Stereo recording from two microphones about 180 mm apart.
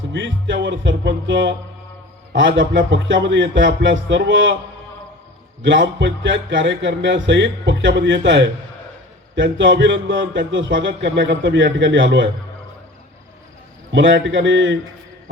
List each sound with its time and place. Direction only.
0.1 s speech: 90° right
2.6 s speech: 85° right
6.0 s speech: 90° right
13.9 s speech: 90° right